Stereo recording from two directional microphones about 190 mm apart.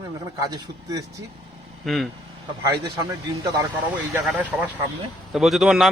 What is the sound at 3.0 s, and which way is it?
Speech, 20° right (ahead or behind).